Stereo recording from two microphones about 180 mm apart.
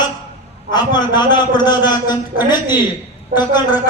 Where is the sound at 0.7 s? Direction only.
25° left (ahead or behind).